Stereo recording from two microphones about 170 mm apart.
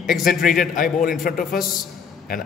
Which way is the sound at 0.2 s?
55° left (ahead or behind).